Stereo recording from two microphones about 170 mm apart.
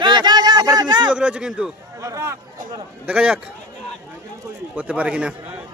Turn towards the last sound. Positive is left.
turn(degrees=-5)  # may be behind; listen again after turning